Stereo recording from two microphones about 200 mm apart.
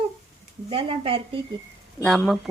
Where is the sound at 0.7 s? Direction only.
30° right (ahead or behind).